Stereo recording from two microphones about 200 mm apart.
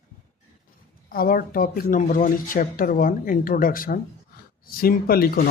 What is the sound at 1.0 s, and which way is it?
Speech, 45° left (ahead or behind).